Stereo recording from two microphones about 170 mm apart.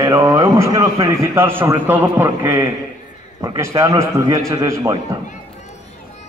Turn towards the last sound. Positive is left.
turn(degrees=-20)  # may be behind; listen again after turning